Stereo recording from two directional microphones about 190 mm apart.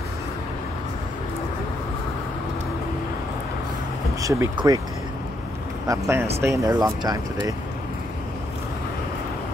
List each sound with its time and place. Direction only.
4.2 s speech: 15° right (ahead or behind)
5.9 s speech: 15° right (ahead or behind)